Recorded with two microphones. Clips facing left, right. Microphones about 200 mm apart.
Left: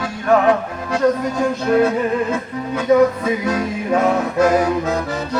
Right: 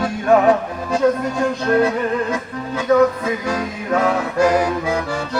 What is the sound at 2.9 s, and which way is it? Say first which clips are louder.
Music: left 1 dB; 10° left (ahead or behind).